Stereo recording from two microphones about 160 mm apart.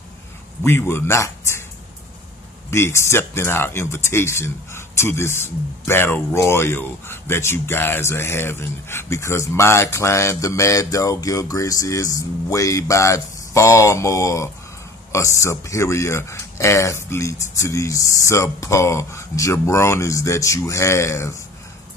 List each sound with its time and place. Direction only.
0.7 s speech: 15° left (ahead or behind)
2.7 s speech: 15° left (ahead or behind)